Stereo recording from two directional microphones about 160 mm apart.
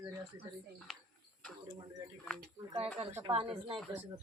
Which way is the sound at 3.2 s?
30° right (ahead or behind).